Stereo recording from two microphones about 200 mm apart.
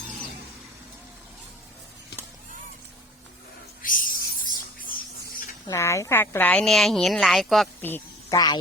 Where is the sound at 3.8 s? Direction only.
45° left (ahead or behind).